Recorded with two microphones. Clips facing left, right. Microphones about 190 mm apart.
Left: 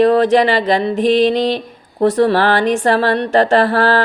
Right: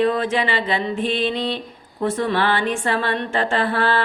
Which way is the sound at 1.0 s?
90° left.